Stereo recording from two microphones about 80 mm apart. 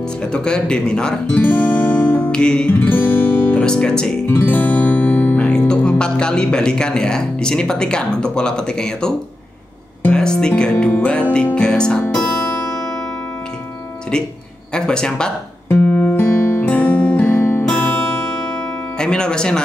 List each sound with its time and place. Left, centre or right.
0.2 s speech: centre
1.4 s music: left
2.3 s speech: centre
2.9 s guitar: left
3.6 s speech: centre
4.3 s speech: left
10.1 s speech: centre
11.5 s music: centre
14.7 s speech: centre
15.7 s music: centre
18.9 s speech: centre